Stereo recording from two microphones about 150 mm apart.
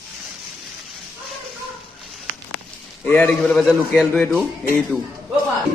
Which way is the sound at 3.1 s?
15° left (ahead or behind).